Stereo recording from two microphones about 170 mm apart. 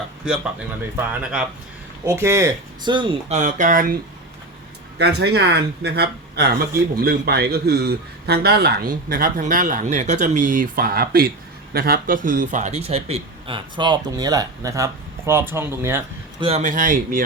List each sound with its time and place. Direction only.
0.8 s speech: 10° right (ahead or behind)
2.0 s speech: 15° right (ahead or behind)
2.9 s speech: 30° right (ahead or behind); by 3.9 s 55° right (ahead or behind)
4.9 s speech: 80° right
6.9 s a man's voice: 65° right (ahead or behind); by 16.0 s 15° right (ahead or behind)
16.4 s speech: 40° right (ahead or behind); by 17.2 s 55° right (ahead or behind)